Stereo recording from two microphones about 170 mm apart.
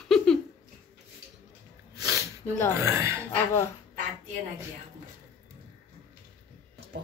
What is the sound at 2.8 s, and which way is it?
Speech, 15° right (ahead or behind).